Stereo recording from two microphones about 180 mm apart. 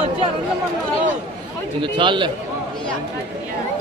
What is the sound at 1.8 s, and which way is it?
Speech, 25° right (ahead or behind).